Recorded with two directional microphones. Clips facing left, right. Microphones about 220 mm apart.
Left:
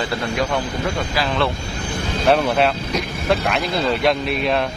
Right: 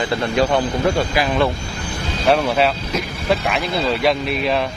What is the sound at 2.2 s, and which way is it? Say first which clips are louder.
Speech: even; centre (ahead or behind).